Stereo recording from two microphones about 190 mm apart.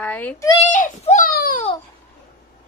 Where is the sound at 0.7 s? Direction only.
40° left (ahead or behind).